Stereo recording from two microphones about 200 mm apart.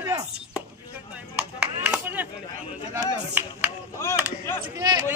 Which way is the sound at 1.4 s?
5° right (ahead or behind).